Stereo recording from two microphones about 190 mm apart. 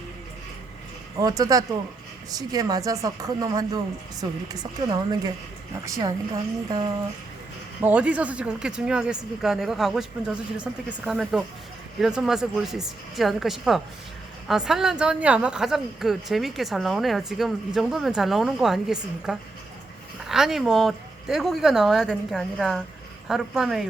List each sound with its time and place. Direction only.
1.2 s a woman's voice: 20° right (ahead or behind)
7.8 s speech: 10° right (ahead or behind)